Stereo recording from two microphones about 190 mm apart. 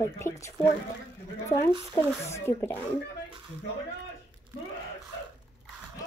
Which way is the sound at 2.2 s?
15° left (ahead or behind).